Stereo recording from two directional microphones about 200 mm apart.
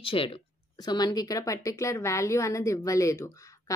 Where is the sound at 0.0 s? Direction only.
25° left (ahead or behind).